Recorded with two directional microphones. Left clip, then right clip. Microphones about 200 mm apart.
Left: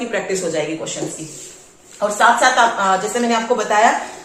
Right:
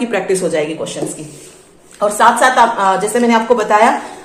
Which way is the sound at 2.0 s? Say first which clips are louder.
Right 3 dB; 50° right (ahead or behind).